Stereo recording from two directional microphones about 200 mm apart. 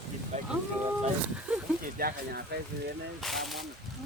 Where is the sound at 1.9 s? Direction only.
50° right (ahead or behind).